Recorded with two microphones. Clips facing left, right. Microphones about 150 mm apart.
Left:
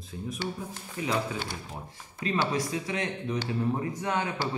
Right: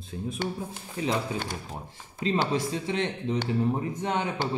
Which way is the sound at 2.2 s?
25° right (ahead or behind).